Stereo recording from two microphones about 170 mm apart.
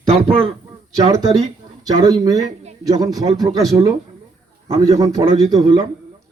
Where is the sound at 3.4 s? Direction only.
Centre (ahead or behind).